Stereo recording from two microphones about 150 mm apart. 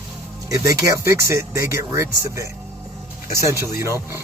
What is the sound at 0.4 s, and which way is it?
Speech, 20° right (ahead or behind).